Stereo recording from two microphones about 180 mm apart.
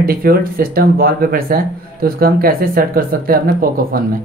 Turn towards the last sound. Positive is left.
turn(degrees=-55)  # may be behind; listen again after turning